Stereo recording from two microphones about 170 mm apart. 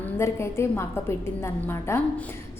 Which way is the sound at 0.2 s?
15° left (ahead or behind).